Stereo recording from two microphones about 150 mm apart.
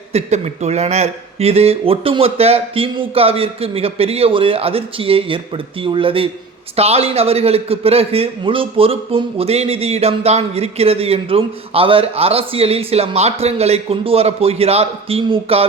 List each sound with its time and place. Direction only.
0.1 s a man's voice: 50° right (ahead or behind)